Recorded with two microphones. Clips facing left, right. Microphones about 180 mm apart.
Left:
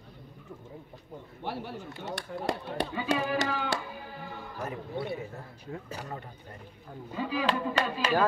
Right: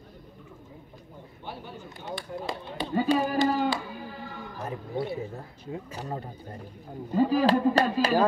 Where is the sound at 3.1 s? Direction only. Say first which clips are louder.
Right 1 dB; 40° right (ahead or behind).